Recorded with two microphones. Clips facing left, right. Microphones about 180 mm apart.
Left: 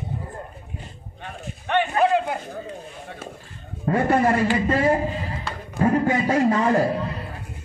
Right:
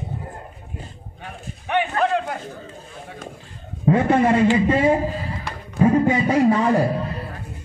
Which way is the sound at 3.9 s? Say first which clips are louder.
Right 3 dB; 20° right (ahead or behind).